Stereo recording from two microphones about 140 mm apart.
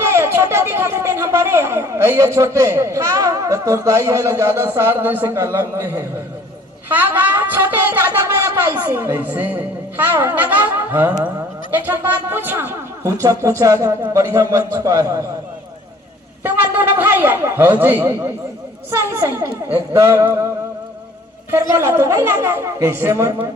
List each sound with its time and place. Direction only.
0.0 s speech: 20° right (ahead or behind)
16.4 s speech: 15° right (ahead or behind)
21.8 s speech: 20° right (ahead or behind)